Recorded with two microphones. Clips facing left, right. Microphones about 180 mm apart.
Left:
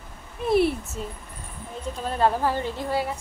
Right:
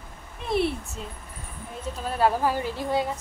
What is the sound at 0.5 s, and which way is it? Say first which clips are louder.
A child's voice: left 4 dB; 5° left (ahead or behind).